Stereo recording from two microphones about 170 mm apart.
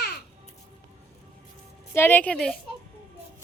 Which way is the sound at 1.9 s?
10° left (ahead or behind).